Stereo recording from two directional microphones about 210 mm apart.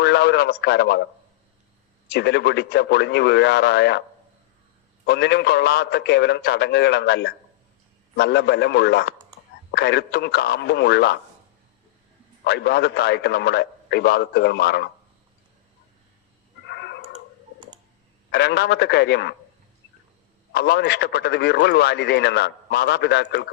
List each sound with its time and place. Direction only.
0.0 s speech: 50° left (ahead or behind)
2.0 s speech: 55° left (ahead or behind)
5.0 s speech: 55° left (ahead or behind)
12.5 s speech: 50° left (ahead or behind)
16.6 s cat: 55° left (ahead or behind)
18.3 s speech: 50° left (ahead or behind)
20.5 s speech: 50° left (ahead or behind)